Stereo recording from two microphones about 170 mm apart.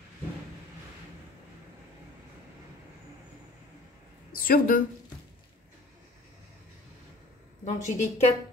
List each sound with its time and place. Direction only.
4.3 s speech: 55° left (ahead or behind)
7.6 s a woman's voice: 40° left (ahead or behind)